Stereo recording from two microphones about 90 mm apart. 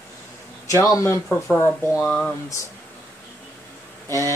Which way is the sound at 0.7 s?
35° left (ahead or behind).